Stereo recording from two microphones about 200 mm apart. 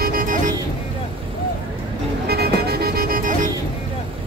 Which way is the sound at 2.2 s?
50° right (ahead or behind).